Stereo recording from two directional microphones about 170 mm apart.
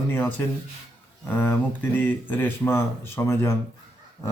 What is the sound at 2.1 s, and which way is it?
Speech, 10° left (ahead or behind).